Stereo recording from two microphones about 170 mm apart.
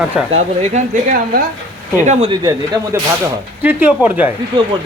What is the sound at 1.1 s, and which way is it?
Speech, 55° right (ahead or behind).